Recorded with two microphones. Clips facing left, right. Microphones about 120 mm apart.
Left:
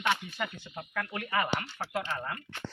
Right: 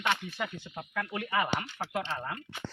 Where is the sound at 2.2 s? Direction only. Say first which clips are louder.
Even; 10° right (ahead or behind).